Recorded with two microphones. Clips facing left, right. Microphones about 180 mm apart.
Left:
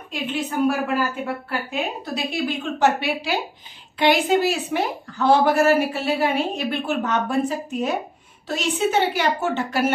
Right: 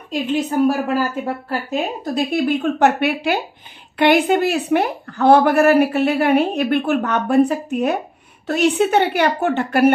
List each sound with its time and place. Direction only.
0.1 s a woman's voice: 40° right (ahead or behind); by 9.8 s 60° right (ahead or behind)